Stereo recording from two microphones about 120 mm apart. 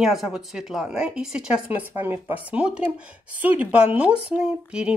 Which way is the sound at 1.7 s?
15° right (ahead or behind).